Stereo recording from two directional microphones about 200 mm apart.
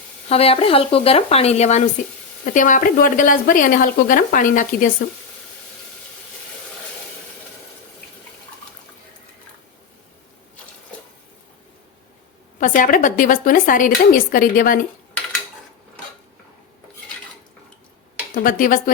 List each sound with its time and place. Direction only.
0.3 s speech: 30° left (ahead or behind)
12.5 s speech: 40° left (ahead or behind)
18.4 s speech: 45° left (ahead or behind)